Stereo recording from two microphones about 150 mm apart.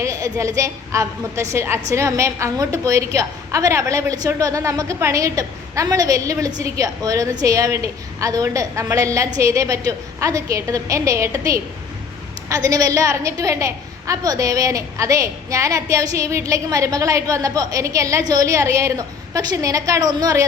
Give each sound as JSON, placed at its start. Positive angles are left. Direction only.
{"t": 0.0, "sound": "a woman's voice", "side_deg": -20}